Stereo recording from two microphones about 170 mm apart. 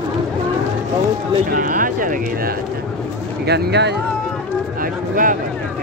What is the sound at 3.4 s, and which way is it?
Speech, 80° right.